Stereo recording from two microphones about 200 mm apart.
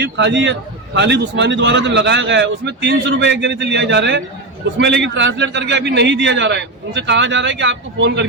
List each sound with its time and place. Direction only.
0.0 s a man's voice: 60° right (ahead or behind)